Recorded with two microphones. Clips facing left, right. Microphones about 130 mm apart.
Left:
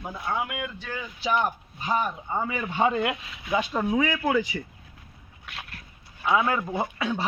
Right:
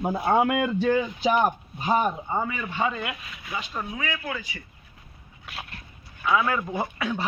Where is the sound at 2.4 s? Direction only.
20° left (ahead or behind).